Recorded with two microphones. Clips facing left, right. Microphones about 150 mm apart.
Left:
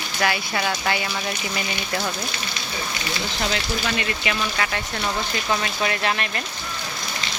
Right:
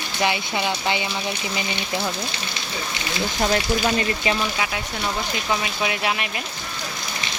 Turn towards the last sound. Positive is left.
turn(degrees=-10)  # may be behind; listen again after turning